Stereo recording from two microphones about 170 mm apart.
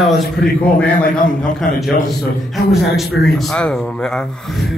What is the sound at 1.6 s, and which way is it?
Speech, 55° left (ahead or behind).